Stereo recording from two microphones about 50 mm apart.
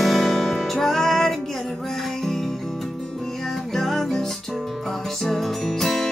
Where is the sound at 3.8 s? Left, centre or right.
Centre.